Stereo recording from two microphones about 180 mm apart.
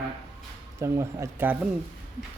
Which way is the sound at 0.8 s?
15° right (ahead or behind).